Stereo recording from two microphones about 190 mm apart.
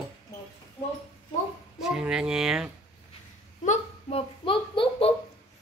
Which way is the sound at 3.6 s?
30° left (ahead or behind).